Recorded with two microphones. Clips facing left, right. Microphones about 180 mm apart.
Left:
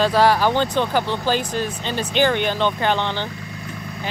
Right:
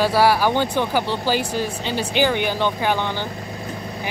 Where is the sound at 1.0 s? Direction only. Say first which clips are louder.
Even; 15° left (ahead or behind).